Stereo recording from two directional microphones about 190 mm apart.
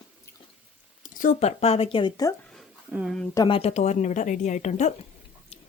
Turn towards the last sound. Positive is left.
turn(degrees=40)  # may be behind; listen again after turning